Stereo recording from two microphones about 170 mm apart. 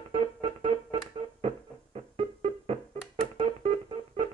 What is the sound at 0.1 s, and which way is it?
Music, 35° right (ahead or behind).